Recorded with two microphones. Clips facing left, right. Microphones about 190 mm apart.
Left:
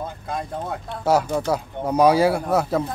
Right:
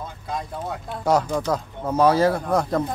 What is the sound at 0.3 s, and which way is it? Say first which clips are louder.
Speech: even; 55° left (ahead or behind).